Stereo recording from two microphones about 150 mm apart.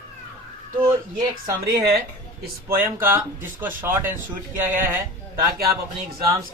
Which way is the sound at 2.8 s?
15° right (ahead or behind).